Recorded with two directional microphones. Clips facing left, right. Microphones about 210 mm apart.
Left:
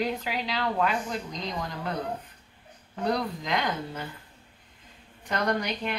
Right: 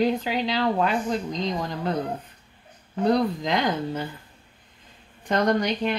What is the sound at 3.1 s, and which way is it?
Speech, 30° right (ahead or behind).